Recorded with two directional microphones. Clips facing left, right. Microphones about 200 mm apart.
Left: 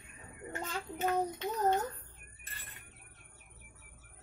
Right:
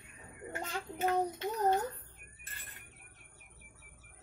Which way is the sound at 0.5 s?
10° right (ahead or behind).